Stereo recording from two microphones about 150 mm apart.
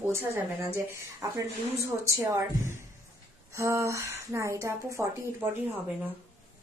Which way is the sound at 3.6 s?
20° right (ahead or behind).